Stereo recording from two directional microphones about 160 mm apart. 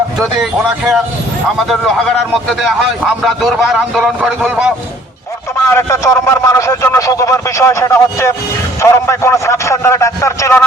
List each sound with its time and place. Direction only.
1.5 s a man's voice: centre (ahead or behind)
5.6 s a man's voice: 15° left (ahead or behind)